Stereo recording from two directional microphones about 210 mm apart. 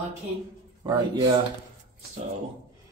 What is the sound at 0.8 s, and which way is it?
Speech, 20° right (ahead or behind).